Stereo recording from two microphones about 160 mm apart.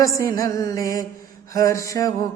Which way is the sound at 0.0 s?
20° left (ahead or behind).